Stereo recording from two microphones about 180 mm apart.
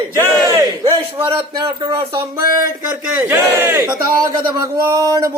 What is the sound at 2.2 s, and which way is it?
Speech, 15° right (ahead or behind).